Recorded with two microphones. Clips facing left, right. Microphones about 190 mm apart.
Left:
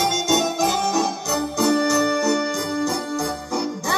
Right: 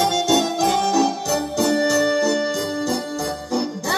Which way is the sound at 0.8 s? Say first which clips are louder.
Right 3 dB; 35° right (ahead or behind).